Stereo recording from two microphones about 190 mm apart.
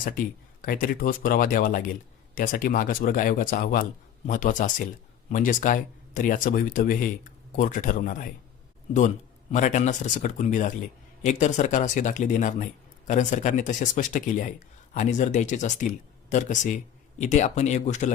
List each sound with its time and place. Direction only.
0.0 s speech: 45° left (ahead or behind)